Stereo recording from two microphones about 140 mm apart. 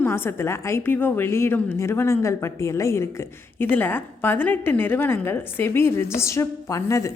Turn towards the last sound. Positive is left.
turn(degrees=20)  # may be behind; listen again after turning